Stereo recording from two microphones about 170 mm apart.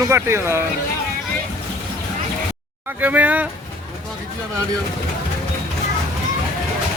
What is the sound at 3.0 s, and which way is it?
Speech, 10° right (ahead or behind).